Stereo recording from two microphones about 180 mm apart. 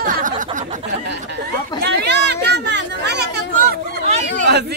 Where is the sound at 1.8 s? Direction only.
70° right (ahead or behind).